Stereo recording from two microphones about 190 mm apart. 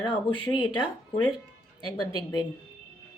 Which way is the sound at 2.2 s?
20° left (ahead or behind).